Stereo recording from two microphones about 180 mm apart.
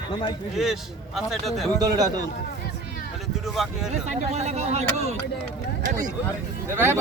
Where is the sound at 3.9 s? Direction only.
40° right (ahead or behind).